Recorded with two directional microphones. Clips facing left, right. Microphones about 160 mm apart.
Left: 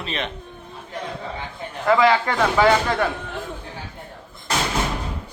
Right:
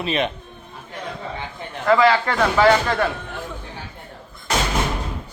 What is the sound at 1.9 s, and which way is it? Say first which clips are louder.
Speech: right 1 dB; 20° left (ahead or behind).